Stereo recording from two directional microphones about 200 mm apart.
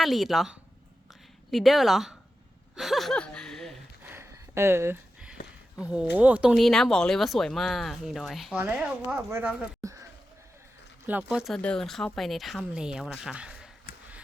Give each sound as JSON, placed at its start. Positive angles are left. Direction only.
{"t": 0.0, "sound": "speech", "side_deg": 0}
{"t": 2.7, "sound": "gasp", "side_deg": 0}
{"t": 4.1, "sound": "a sound", "side_deg": -10}
{"t": 5.7, "sound": "speech", "side_deg": -5}
{"t": 9.8, "sound": "a sound", "side_deg": -15}
{"t": 11.0, "sound": "speech", "side_deg": -5}